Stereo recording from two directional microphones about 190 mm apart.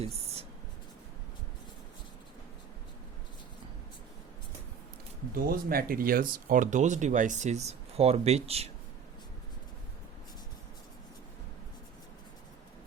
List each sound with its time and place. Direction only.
5.3 s speech: 50° right (ahead or behind); by 8.7 s 35° right (ahead or behind)